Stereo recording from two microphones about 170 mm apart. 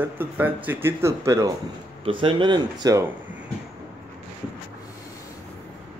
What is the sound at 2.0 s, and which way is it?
Speech, 30° right (ahead or behind).